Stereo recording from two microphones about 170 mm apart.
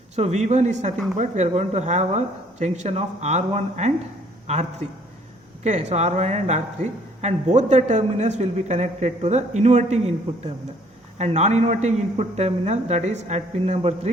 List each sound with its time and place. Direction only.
0.2 s speech: 40° right (ahead or behind)
5.6 s speech: 40° right (ahead or behind)
11.2 s speech: 40° right (ahead or behind)